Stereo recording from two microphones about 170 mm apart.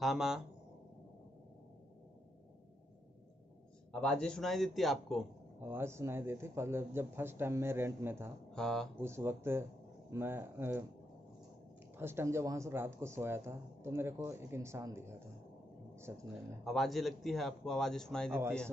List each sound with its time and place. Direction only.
0.0 s a man's voice: centre (ahead or behind)
3.9 s a man's voice: 5° left (ahead or behind)
5.6 s speech: 15° right (ahead or behind)
8.5 s a man's voice: 5° left (ahead or behind)
9.0 s speech: 15° right (ahead or behind)
12.0 s speech: 15° right (ahead or behind)
16.6 s a man's voice: centre (ahead or behind)
18.3 s speech: 15° right (ahead or behind)